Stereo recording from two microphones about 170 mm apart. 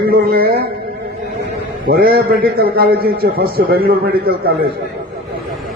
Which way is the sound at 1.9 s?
65° right (ahead or behind).